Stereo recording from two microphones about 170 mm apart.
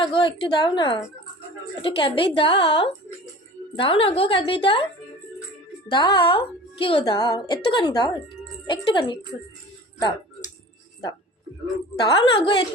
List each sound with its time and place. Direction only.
0.0 s a woman's voice: 30° left (ahead or behind)
5.9 s speech: 25° left (ahead or behind)
11.9 s speech: 25° left (ahead or behind)